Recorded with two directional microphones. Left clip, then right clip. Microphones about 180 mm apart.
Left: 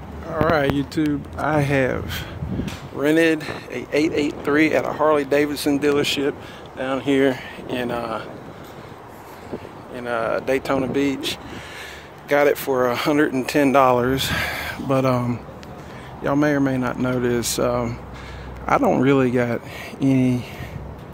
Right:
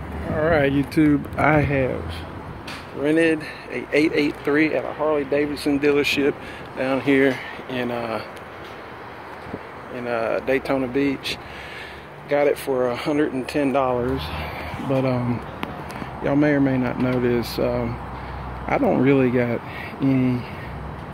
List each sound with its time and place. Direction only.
0.5 s speech: 5° left (ahead or behind)
1.7 s speech: 30° left (ahead or behind); by 4.6 s 10° left (ahead or behind)
4.7 s speech: 30° left (ahead or behind)
5.6 s speech: 15° left (ahead or behind)
9.9 s speech: 5° left (ahead or behind)
12.3 s speech: 25° left (ahead or behind)
16.3 s speech: 5° left (ahead or behind)